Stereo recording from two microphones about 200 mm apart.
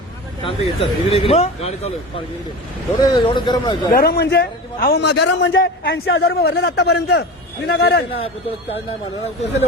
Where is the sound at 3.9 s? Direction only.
50° left (ahead or behind).